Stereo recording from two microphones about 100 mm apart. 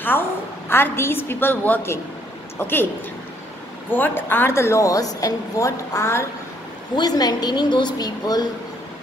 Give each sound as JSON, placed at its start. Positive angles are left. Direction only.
{"t": 0.7, "sound": "a woman's voice", "side_deg": 25}
{"t": 3.9, "sound": "a woman's voice", "side_deg": 20}
{"t": 7.0, "sound": "a woman's voice", "side_deg": 40}